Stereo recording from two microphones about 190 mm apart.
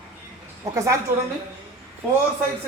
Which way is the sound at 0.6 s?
15° right (ahead or behind).